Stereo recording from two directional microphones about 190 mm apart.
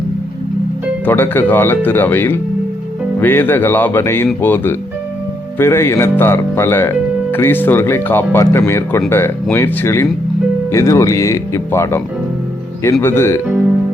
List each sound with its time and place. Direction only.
1.0 s speech: 10° left (ahead or behind)